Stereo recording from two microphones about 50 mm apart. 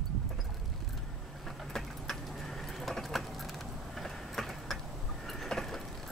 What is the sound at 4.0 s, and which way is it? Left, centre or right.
Vehicle, centre.